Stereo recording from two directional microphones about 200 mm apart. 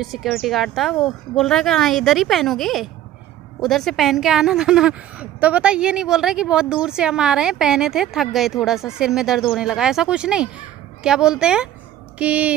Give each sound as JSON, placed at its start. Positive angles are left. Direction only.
{"t": 0.0, "sound": "a woman's voice", "side_deg": 0}